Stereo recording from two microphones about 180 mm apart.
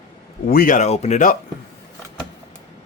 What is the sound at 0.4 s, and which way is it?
Speech, 50° left (ahead or behind).